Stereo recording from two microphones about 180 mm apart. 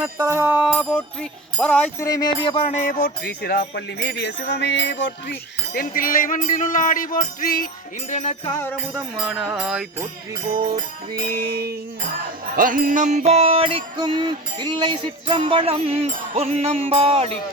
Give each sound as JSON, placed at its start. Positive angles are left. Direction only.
{"t": 0.0, "sound": "music", "side_deg": -15}
{"t": 0.7, "sound": "music", "side_deg": 0}
{"t": 2.0, "sound": "music", "side_deg": 20}
{"t": 3.0, "sound": "music", "side_deg": 60}
{"t": 8.1, "sound": "music", "side_deg": 40}
{"t": 8.9, "sound": "music", "side_deg": 0}
{"t": 11.3, "sound": "music", "side_deg": -60}
{"t": 12.5, "sound": "music", "side_deg": -50}